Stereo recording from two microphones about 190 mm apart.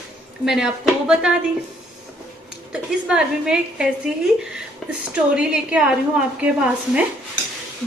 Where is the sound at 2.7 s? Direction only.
5° right (ahead or behind).